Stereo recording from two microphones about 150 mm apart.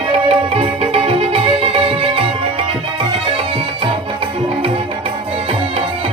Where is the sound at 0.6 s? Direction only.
40° right (ahead or behind).